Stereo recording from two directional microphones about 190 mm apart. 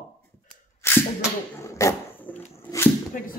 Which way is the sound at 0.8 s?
15° left (ahead or behind).